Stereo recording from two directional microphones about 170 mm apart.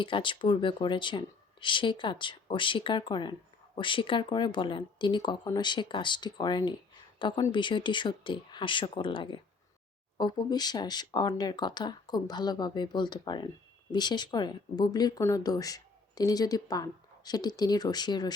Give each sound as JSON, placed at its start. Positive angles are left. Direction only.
{"t": 0.0, "sound": "speech", "side_deg": 30}